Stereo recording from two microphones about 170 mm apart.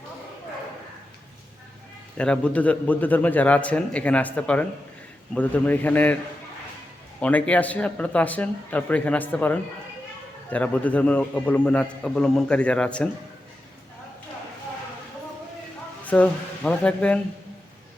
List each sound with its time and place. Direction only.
2.1 s a man's voice: 5° left (ahead or behind)
7.2 s a man's voice: 10° left (ahead or behind)
16.0 s a man's voice: 10° left (ahead or behind)